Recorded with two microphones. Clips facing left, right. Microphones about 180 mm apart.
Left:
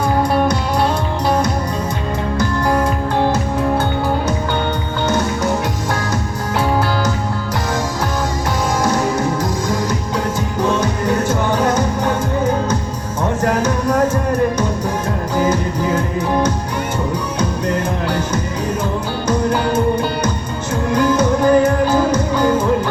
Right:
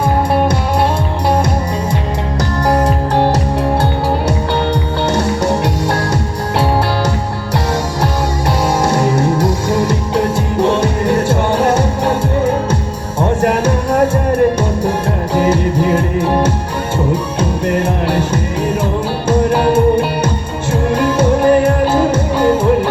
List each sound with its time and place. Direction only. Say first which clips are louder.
2.4 s music: right 3 dB; 35° right (ahead or behind)
8.8 s music: right 2 dB; 30° right (ahead or behind)
15.4 s music: right 4 dB; 30° right (ahead or behind)
17.7 s music: right 4 dB; 30° right (ahead or behind)
19.3 s music: right 5 dB; 30° right (ahead or behind)
20.9 s music: right 1 dB; 30° right (ahead or behind)